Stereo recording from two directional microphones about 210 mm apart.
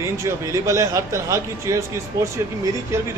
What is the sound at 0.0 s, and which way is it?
Speech, 15° right (ahead or behind).